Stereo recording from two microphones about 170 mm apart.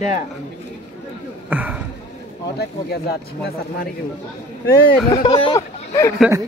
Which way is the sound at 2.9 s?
65° left (ahead or behind).